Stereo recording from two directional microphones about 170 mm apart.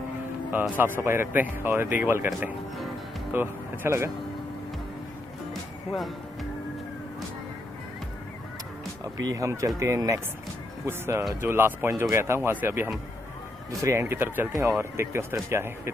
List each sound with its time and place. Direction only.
0.5 s speech: 10° right (ahead or behind)
5.5 s music: centre (ahead or behind)
9.2 s speech: 20° right (ahead or behind)